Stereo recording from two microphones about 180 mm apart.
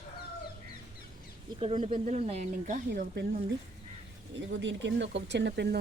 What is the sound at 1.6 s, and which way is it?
Speech, 35° right (ahead or behind).